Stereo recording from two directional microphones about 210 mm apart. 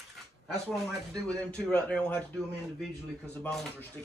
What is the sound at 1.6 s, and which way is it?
Speech, 5° left (ahead or behind).